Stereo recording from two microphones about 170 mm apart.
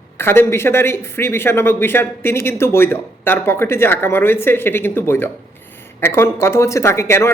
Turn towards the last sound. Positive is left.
turn(degrees=15)  # may be behind; listen again after turning